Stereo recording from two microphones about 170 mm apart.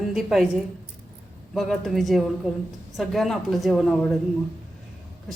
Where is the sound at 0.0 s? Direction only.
Centre (ahead or behind).